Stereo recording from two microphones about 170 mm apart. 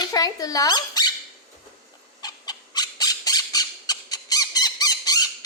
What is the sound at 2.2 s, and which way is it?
Squawk, 25° left (ahead or behind).